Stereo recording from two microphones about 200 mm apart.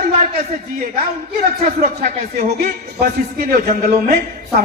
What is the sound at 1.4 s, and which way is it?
A man's voice, 45° right (ahead or behind).